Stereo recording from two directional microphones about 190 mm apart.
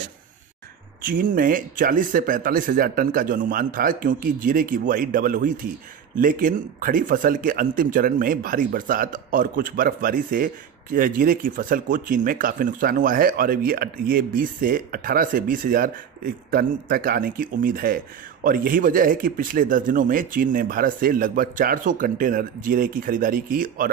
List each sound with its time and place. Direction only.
1.0 s speech: 45° right (ahead or behind)